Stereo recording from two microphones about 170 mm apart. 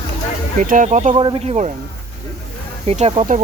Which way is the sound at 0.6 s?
50° right (ahead or behind).